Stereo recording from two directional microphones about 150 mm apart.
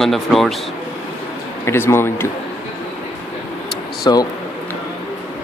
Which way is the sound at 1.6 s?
15° left (ahead or behind).